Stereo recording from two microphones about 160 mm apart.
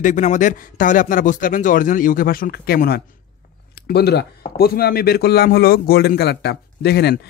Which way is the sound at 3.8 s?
90° left.